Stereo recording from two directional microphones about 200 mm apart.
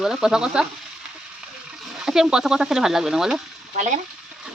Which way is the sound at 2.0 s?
Centre (ahead or behind).